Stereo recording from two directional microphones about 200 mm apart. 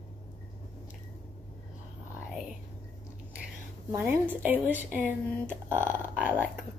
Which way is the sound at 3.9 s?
10° right (ahead or behind).